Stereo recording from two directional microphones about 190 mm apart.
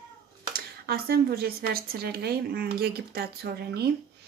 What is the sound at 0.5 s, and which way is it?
Speech, 55° right (ahead or behind).